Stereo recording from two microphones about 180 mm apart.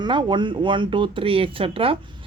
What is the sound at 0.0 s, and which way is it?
Speech, 25° right (ahead or behind).